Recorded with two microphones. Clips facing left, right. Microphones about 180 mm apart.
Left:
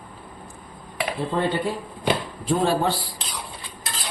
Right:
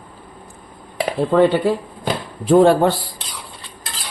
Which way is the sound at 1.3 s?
75° right (ahead or behind).